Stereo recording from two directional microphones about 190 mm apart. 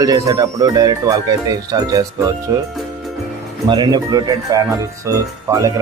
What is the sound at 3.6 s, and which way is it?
Speech, 20° right (ahead or behind).